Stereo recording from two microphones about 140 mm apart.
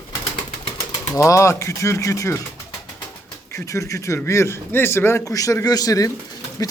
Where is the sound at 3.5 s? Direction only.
20° left (ahead or behind).